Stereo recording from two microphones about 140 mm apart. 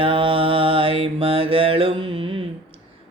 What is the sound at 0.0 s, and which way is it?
Mantra, 40° right (ahead or behind).